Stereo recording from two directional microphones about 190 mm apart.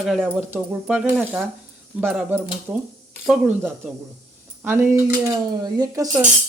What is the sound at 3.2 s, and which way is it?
A man's voice, 5° right (ahead or behind).